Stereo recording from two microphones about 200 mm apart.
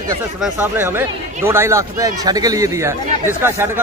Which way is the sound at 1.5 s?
15° right (ahead or behind).